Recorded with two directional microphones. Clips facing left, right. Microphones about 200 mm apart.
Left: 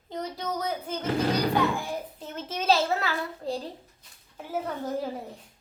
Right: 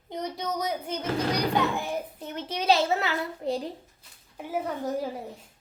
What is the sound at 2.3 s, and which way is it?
A child's voice, 15° right (ahead or behind).